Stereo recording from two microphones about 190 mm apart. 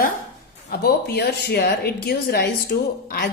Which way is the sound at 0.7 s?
55° left (ahead or behind).